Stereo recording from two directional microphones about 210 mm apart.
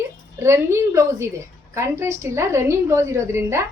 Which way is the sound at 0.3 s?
10° right (ahead or behind).